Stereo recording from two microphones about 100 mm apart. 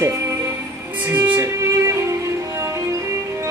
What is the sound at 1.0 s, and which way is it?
Music, 20° right (ahead or behind).